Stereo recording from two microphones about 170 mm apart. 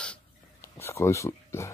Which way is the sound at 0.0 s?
10° left (ahead or behind).